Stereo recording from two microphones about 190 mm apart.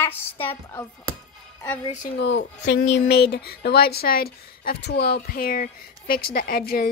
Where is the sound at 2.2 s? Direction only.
65° left (ahead or behind).